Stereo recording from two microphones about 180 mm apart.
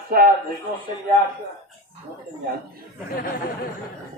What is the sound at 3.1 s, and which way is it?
Speech, 60° left (ahead or behind).